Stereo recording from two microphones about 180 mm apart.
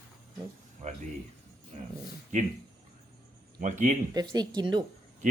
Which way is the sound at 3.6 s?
45° right (ahead or behind).